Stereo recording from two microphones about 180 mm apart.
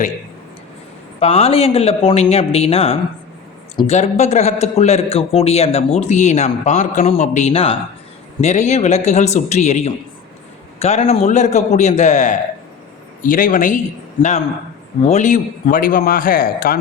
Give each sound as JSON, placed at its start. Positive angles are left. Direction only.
{"t": 1.2, "sound": "a man's voice", "side_deg": 35}